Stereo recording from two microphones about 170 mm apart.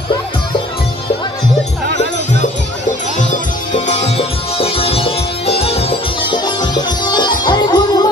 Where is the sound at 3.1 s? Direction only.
45° left (ahead or behind).